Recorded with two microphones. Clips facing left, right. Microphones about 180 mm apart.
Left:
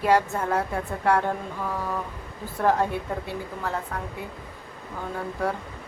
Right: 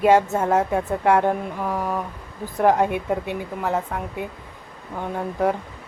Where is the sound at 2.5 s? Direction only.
15° right (ahead or behind).